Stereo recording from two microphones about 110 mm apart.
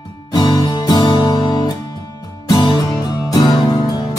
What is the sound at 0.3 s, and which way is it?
Music, 40° left (ahead or behind).